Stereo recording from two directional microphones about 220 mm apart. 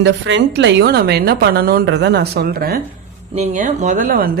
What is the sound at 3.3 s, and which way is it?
Speech, 30° right (ahead or behind).